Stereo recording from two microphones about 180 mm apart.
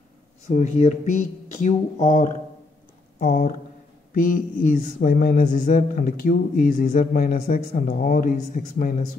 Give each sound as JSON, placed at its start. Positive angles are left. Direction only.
{"t": 0.5, "sound": "speech", "side_deg": 40}